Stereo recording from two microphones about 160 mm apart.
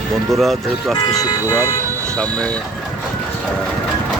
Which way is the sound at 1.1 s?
20° left (ahead or behind).